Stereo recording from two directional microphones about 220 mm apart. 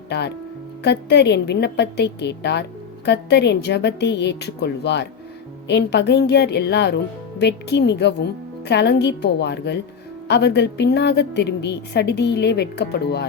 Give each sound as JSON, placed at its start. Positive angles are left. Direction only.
{"t": 0.1, "sound": "speech", "side_deg": 50}